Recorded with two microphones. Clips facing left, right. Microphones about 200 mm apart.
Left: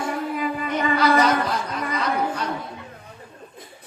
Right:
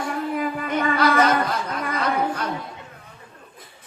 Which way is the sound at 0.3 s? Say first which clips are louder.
Right 1 dB; 55° right (ahead or behind).